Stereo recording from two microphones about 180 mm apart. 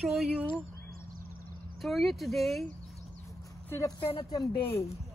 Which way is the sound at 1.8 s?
Centre (ahead or behind).